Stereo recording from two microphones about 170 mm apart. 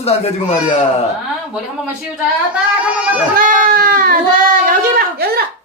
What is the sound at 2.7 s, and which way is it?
Speech, 5° right (ahead or behind).